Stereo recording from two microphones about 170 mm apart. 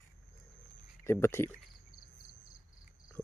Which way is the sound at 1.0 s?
15° left (ahead or behind).